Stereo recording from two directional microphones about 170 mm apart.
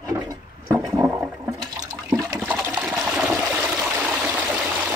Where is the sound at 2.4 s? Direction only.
10° right (ahead or behind).